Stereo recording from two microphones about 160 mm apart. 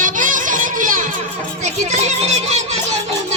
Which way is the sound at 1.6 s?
45° right (ahead or behind).